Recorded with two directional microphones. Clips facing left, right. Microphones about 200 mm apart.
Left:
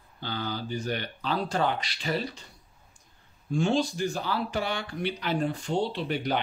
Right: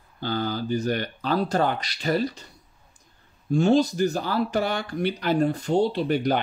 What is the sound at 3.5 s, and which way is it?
Speech, 40° right (ahead or behind).